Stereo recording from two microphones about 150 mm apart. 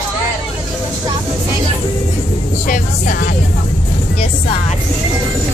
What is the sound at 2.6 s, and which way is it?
Speech, 60° left (ahead or behind).